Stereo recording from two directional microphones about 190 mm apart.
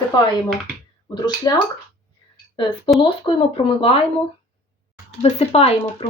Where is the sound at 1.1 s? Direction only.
25° left (ahead or behind).